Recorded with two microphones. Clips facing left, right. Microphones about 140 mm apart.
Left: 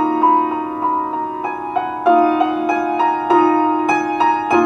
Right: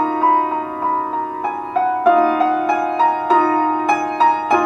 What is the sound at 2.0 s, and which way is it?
Music, 5° left (ahead or behind).